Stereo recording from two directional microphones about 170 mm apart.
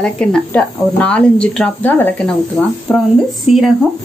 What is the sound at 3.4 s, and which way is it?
Speech, centre (ahead or behind).